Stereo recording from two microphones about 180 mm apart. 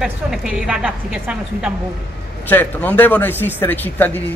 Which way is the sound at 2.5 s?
10° left (ahead or behind).